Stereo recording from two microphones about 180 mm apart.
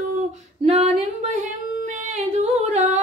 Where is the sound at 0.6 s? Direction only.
40° right (ahead or behind).